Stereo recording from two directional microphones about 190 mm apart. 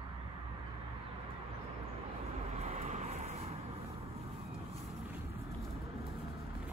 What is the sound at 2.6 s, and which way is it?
Vehicle, 35° right (ahead or behind).